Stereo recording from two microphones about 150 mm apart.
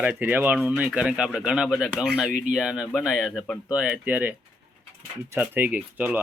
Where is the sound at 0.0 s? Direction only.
10° right (ahead or behind).